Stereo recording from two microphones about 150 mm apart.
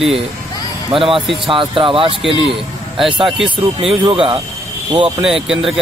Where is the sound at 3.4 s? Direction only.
35° right (ahead or behind).